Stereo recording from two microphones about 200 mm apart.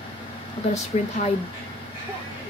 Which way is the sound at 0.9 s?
35° left (ahead or behind).